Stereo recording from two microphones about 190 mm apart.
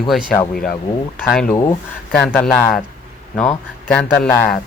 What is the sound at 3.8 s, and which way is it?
Speech, 5° left (ahead or behind).